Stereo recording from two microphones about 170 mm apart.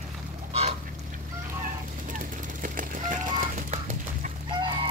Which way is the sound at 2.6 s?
50° right (ahead or behind).